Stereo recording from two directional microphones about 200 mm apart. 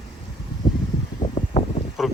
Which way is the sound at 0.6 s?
20° left (ahead or behind).